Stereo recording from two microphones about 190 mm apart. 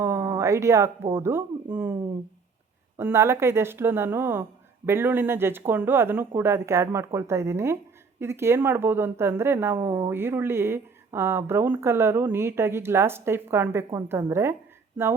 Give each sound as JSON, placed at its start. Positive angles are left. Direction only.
{"t": 0.0, "sound": "a sound", "side_deg": -15}
{"t": 1.1, "sound": "speech", "side_deg": -15}
{"t": 3.0, "sound": "speech", "side_deg": -15}